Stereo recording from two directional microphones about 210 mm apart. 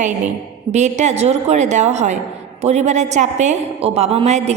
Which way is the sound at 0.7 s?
35° right (ahead or behind).